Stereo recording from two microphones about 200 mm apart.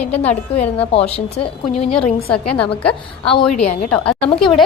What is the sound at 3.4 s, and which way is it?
Speech, 30° left (ahead or behind).